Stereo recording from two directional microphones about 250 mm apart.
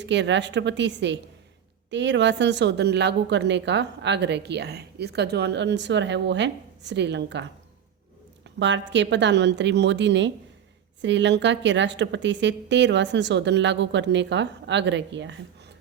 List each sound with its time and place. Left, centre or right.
0.0 s a woman's voice: right
8.5 s a woman's voice: right